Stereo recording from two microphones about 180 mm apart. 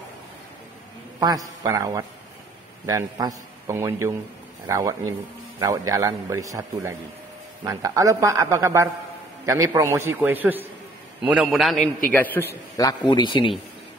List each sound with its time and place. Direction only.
1.6 s a man's voice: 20° right (ahead or behind); by 12.4 s 10° left (ahead or behind)
12.7 s a man's voice: 20° left (ahead or behind)